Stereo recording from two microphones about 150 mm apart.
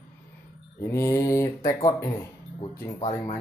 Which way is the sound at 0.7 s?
20° left (ahead or behind).